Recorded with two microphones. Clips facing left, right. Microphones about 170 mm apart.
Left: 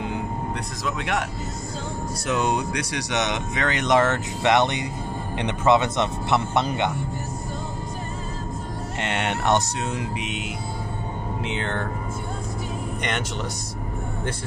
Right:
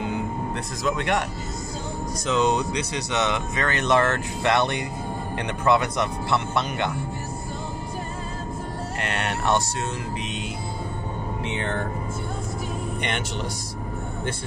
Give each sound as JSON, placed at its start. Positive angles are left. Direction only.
{"t": 0.8, "sound": "speech", "side_deg": 5}
{"t": 2.3, "sound": "speech", "side_deg": 10}
{"t": 9.0, "sound": "speech", "side_deg": 20}